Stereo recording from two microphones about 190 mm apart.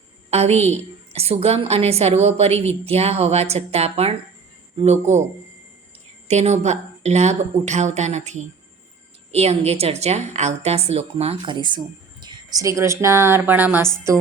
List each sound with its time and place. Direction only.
0.3 s a woman's voice: 35° right (ahead or behind)
6.2 s a woman's voice: 35° right (ahead or behind); by 14.2 s 15° right (ahead or behind)